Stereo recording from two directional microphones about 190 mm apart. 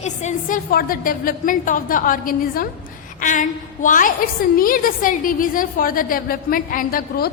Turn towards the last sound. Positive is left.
turn(degrees=50)  # may be behind; listen again after turning